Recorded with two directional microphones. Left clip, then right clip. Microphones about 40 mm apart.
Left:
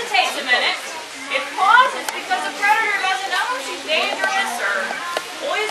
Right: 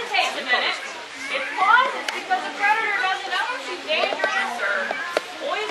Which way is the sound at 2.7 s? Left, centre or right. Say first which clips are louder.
Left 4 dB; left.